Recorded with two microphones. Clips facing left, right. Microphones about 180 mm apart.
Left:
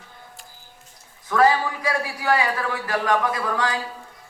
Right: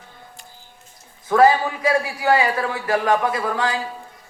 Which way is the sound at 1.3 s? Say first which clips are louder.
Right 4 dB; 25° right (ahead or behind).